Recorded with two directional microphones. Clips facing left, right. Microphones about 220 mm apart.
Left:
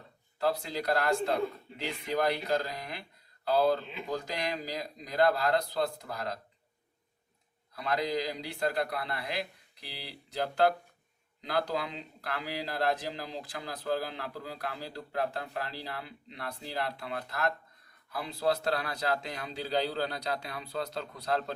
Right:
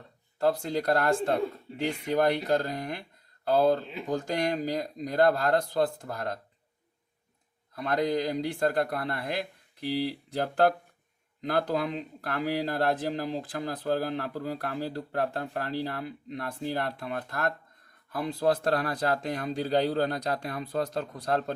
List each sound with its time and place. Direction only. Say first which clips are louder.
0.3 s speech: right 5 dB; 50° right (ahead or behind)
7.8 s speech: right 4 dB; 50° right (ahead or behind)